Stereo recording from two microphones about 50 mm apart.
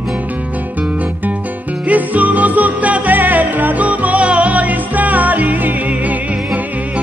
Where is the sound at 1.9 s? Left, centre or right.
Right.